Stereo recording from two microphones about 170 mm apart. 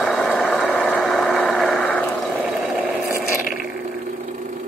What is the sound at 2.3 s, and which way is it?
Water, 5° right (ahead or behind).